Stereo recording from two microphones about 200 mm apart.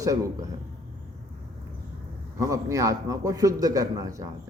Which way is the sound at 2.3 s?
15° right (ahead or behind).